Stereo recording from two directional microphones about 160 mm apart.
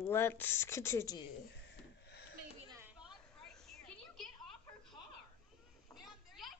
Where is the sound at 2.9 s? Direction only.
Centre (ahead or behind).